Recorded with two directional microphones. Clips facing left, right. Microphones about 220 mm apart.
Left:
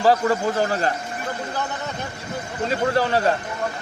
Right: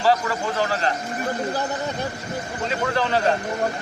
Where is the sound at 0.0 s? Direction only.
45° left (ahead or behind).